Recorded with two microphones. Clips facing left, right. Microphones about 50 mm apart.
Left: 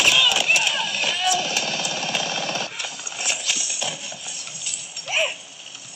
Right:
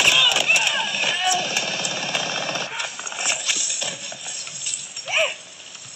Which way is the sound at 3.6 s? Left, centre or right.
Left.